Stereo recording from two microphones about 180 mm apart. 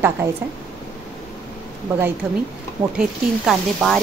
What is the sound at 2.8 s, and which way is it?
Speech, 10° right (ahead or behind).